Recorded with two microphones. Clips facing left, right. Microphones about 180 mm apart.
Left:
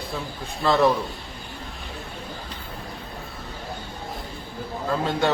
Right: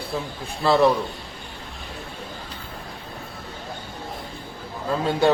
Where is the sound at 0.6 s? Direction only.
5° right (ahead or behind).